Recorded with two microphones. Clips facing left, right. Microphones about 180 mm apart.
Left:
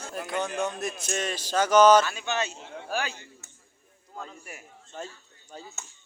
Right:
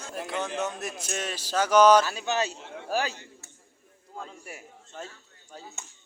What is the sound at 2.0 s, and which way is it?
A man's voice, 35° right (ahead or behind).